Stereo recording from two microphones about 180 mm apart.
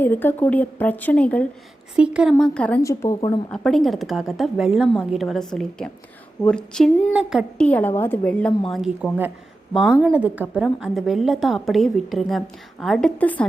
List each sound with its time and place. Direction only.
0.0 s speech: 10° left (ahead or behind)
2.0 s a woman's voice: 5° right (ahead or behind)
2.4 s speech: 5° left (ahead or behind); by 3.4 s 25° left (ahead or behind)
3.5 s a woman's voice: 5° left (ahead or behind)
7.7 s a woman's voice: 10° left (ahead or behind)